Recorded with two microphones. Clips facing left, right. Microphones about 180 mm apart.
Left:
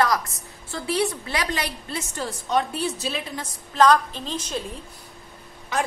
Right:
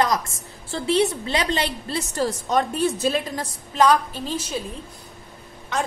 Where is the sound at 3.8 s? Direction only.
10° right (ahead or behind).